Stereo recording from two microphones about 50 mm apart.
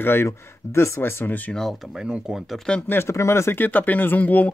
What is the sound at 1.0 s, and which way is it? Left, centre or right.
Speech, left.